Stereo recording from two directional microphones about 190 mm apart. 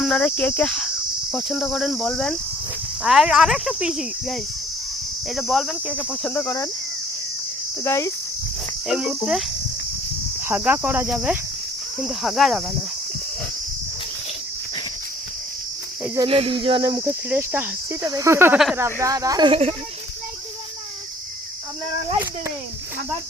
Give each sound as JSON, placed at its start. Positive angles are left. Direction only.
{"t": 0.0, "sound": "cricket", "side_deg": 10}
{"t": 1.3, "sound": "speech", "side_deg": 0}
{"t": 6.1, "sound": "cricket", "side_deg": 5}
{"t": 7.9, "sound": "cricket", "side_deg": 15}
{"t": 8.9, "sound": "speech", "side_deg": -5}
{"t": 10.4, "sound": "speech", "side_deg": -10}
{"t": 16.2, "sound": "cricket", "side_deg": -30}
{"t": 17.1, "sound": "speech", "side_deg": -10}